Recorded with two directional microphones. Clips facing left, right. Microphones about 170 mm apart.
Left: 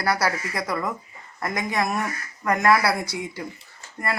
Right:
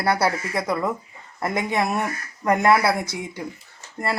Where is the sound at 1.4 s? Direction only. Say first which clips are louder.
Right 3 dB; 25° right (ahead or behind).